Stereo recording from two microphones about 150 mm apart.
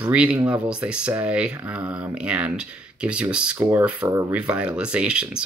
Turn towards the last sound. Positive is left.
turn(degrees=-5)  # may be behind; listen again after turning